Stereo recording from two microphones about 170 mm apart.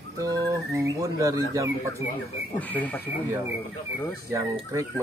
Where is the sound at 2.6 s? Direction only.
10° left (ahead or behind).